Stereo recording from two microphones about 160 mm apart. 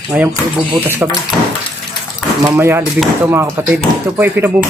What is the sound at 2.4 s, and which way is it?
Speech, 15° right (ahead or behind).